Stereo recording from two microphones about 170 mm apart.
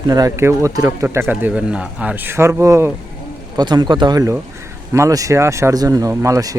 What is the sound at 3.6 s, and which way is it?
Speech, 25° right (ahead or behind).